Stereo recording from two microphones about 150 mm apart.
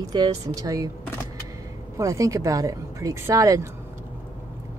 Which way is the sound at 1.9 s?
20° right (ahead or behind).